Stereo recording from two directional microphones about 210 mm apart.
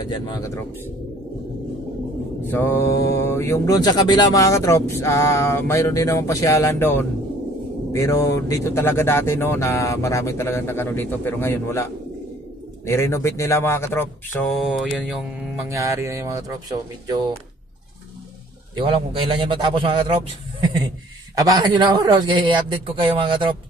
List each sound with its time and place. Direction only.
0.0 s speech: 20° left (ahead or behind)
2.4 s speech: 10° left (ahead or behind)
14.5 s mantra: centre (ahead or behind)
15.7 s speech: 15° right (ahead or behind)
18.8 s a man's voice: 25° right (ahead or behind)
21.4 s a man's voice: 20° right (ahead or behind)